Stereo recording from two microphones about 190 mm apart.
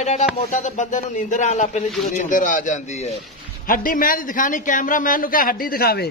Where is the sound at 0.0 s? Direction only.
35° left (ahead or behind).